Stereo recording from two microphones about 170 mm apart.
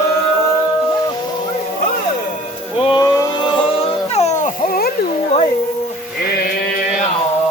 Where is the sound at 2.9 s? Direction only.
25° left (ahead or behind).